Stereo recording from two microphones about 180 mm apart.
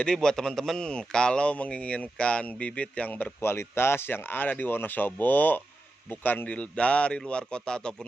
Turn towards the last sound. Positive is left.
turn(degrees=5)  # may be behind; listen again after turning